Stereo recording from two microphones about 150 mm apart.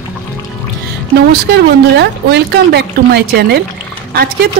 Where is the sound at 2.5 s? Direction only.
90° right.